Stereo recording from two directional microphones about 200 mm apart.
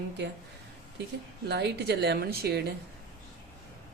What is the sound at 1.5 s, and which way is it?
A woman's voice, 55° right (ahead or behind).